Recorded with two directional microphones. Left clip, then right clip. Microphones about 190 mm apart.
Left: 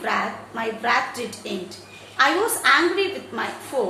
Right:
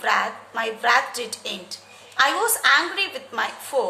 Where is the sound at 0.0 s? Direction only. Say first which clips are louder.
Right 2 dB; 40° right (ahead or behind).